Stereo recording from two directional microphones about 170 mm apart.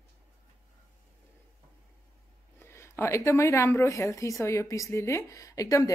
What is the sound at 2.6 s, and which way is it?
Speech, 15° left (ahead or behind).